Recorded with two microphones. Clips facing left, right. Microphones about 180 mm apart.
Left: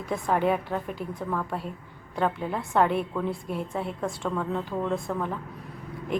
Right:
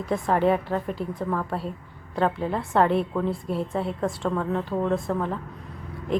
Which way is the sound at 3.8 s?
Centre (ahead or behind).